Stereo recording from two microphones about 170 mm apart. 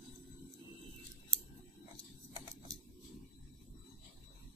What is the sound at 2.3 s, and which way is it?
Typewriter, 25° right (ahead or behind).